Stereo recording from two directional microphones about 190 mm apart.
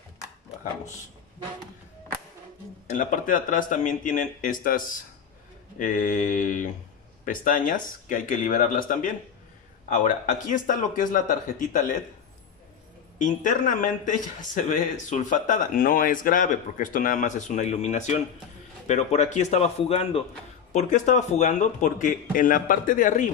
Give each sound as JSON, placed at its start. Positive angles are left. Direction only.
{"t": 2.9, "sound": "speech", "side_deg": 45}
{"t": 13.2, "sound": "speech", "side_deg": 45}